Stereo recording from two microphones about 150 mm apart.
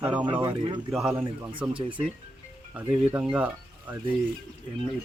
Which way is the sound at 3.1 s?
10° right (ahead or behind).